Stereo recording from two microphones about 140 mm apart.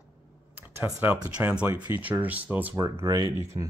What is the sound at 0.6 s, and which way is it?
Speech, 15° right (ahead or behind).